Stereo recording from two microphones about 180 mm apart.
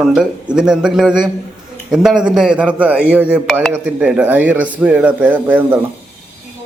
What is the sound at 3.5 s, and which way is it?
A man's voice, 5° left (ahead or behind).